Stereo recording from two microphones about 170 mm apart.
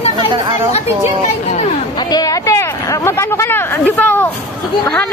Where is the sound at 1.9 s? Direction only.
20° left (ahead or behind).